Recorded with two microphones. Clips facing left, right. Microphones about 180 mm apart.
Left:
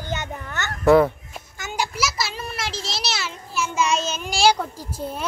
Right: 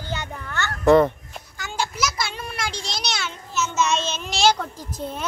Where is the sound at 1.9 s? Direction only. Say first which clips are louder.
Even; 5° left (ahead or behind).